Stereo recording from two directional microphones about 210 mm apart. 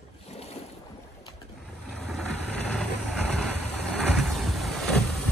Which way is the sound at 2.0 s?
Centre (ahead or behind).